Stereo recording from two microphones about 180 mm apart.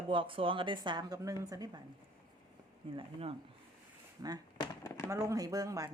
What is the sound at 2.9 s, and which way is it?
Speech, 30° right (ahead or behind).